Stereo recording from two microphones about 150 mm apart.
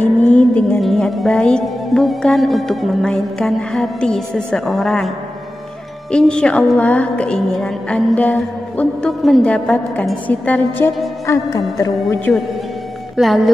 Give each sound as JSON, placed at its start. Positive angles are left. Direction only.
{"t": 0.0, "sound": "speech", "side_deg": 10}
{"t": 6.1, "sound": "a woman's voice", "side_deg": 5}
{"t": 11.2, "sound": "a woman's voice", "side_deg": 20}
{"t": 13.1, "sound": "speech", "side_deg": 0}